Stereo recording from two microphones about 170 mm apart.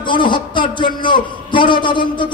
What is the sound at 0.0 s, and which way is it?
A man's voice, 30° left (ahead or behind).